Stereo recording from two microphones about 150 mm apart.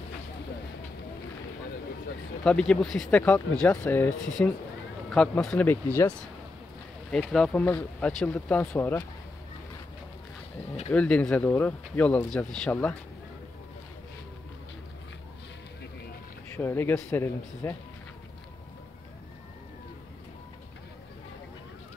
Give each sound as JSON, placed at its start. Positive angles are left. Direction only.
{"t": 2.4, "sound": "speech", "side_deg": 5}
{"t": 7.1, "sound": "speech", "side_deg": 5}
{"t": 10.9, "sound": "speech", "side_deg": 10}
{"t": 16.5, "sound": "speech", "side_deg": 15}